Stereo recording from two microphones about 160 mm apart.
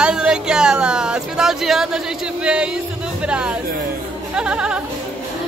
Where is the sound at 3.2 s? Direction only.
5° right (ahead or behind).